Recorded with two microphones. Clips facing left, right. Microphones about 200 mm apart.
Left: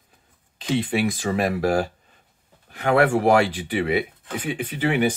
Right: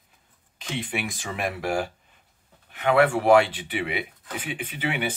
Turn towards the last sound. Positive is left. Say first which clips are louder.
# left 7 dB
turn(degrees=45)  # may be behind; listen again after turning